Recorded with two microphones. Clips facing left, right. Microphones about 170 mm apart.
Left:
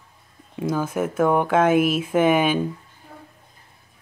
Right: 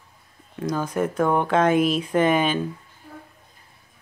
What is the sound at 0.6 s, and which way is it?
Speech, 5° left (ahead or behind).